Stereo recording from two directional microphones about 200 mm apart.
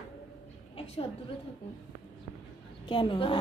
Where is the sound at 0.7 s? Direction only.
30° left (ahead or behind).